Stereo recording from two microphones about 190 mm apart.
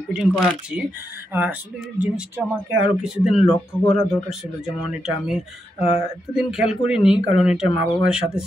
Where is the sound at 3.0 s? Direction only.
5° right (ahead or behind).